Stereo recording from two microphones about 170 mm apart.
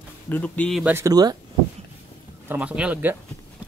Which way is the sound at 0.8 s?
15° right (ahead or behind).